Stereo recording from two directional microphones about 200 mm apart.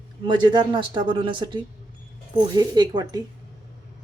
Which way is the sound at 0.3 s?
20° right (ahead or behind).